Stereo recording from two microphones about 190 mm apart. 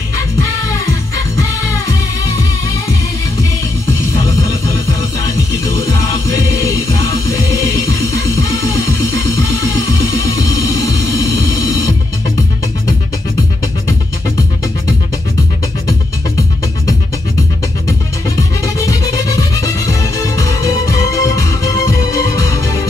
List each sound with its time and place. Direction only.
19.6 s music: 15° left (ahead or behind)